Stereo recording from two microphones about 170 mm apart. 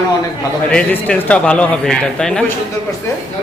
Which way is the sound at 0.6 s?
5° left (ahead or behind).